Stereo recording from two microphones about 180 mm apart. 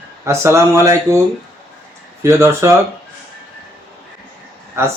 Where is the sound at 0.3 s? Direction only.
15° right (ahead or behind).